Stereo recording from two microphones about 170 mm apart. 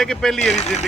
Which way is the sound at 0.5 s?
40° left (ahead or behind).